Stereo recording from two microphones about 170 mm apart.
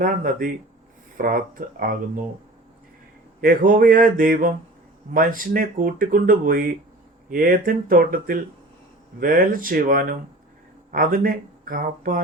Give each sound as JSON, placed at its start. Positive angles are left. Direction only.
{"t": 0.0, "sound": "speech", "side_deg": -55}
{"t": 3.4, "sound": "speech", "side_deg": -55}